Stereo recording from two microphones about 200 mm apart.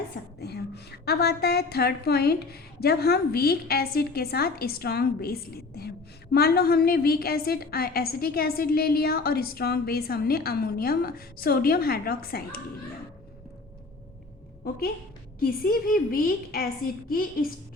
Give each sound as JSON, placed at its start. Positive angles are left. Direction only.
{"t": 0.3, "sound": "a woman's voice", "side_deg": 55}
{"t": 15.4, "sound": "a woman's voice", "side_deg": 45}